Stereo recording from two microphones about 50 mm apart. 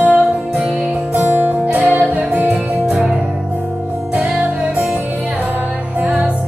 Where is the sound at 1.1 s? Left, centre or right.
Right.